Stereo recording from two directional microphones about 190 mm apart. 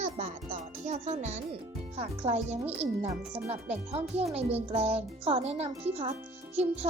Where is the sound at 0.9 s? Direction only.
40° right (ahead or behind).